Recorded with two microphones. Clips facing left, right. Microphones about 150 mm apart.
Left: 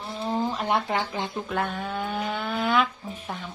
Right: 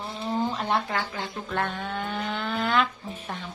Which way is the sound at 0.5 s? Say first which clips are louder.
Left 2 dB; 15° left (ahead or behind).